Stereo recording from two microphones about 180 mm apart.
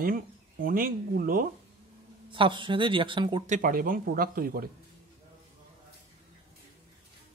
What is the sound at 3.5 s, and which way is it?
Speech, 50° right (ahead or behind).